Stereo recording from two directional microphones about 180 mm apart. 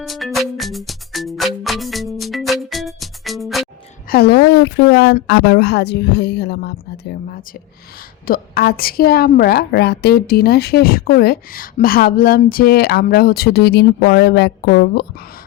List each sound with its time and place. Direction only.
0.0 s music: centre (ahead or behind)
4.1 s a woman's voice: 65° left (ahead or behind)